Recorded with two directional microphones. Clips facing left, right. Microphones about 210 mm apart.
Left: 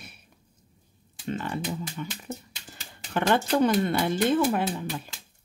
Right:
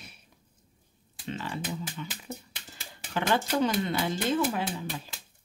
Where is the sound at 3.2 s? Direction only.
55° left (ahead or behind).